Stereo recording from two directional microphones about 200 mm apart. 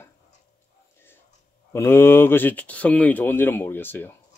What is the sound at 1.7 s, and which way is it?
Speech, 10° left (ahead or behind).